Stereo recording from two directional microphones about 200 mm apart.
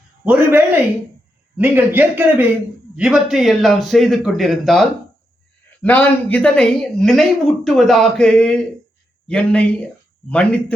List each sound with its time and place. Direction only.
0.3 s a man's voice: 10° right (ahead or behind)